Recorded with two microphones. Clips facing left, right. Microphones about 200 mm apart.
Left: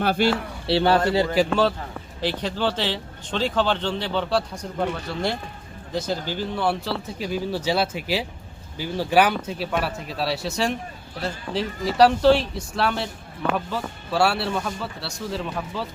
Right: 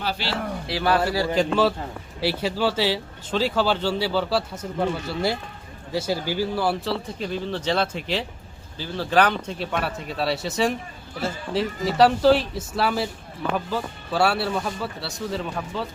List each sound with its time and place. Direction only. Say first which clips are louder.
0.0 s speech: left 8 dB; 50° left (ahead or behind)
0.7 s speech: left 5 dB; 25° left (ahead or behind)
1.4 s speech: even; centre (ahead or behind)